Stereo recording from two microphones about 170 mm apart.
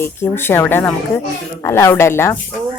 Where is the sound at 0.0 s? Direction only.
15° left (ahead or behind).